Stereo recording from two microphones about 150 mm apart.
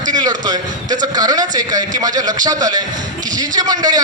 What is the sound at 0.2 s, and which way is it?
A man's voice, 30° right (ahead or behind).